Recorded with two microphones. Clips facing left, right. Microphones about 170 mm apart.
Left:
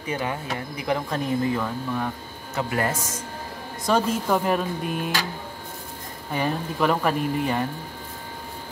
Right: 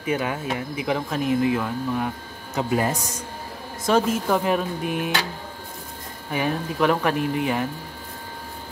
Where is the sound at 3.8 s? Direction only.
Centre (ahead or behind).